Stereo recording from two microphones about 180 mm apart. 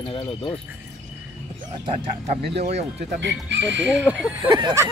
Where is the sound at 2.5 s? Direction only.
35° right (ahead or behind).